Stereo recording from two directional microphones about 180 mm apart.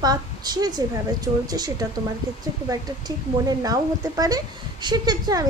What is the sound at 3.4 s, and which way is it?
A woman's voice, 20° right (ahead or behind).